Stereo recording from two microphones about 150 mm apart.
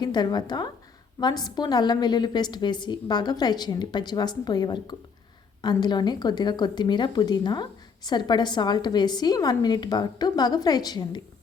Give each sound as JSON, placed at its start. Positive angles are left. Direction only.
{"t": 0.0, "sound": "speech", "side_deg": 30}